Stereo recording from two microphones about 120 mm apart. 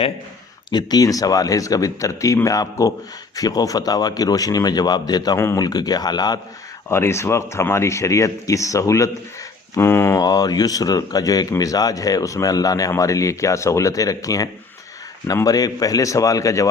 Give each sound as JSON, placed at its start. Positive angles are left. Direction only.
{"t": 0.7, "sound": "speech", "side_deg": 35}
{"t": 6.8, "sound": "speech", "side_deg": 20}